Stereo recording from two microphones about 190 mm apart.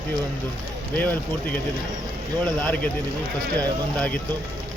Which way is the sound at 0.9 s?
10° left (ahead or behind).